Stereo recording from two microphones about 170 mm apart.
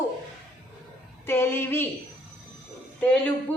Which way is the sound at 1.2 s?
15° left (ahead or behind).